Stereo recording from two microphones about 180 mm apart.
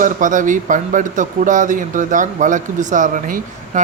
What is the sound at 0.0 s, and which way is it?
Speech, 45° right (ahead or behind).